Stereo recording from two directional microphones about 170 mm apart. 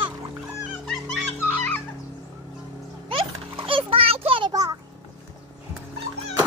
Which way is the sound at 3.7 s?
30° right (ahead or behind).